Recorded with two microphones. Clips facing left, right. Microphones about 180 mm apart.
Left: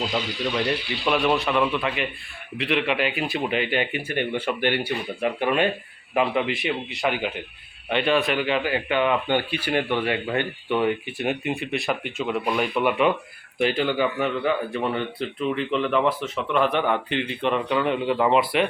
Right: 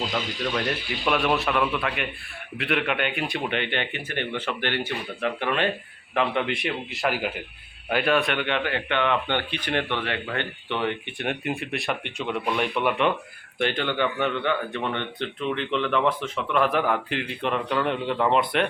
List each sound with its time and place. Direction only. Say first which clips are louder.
0.5 s speech: left 4 dB; centre (ahead or behind)